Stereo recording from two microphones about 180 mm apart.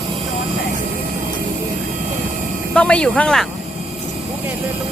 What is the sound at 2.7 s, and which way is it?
Speech, 5° left (ahead or behind).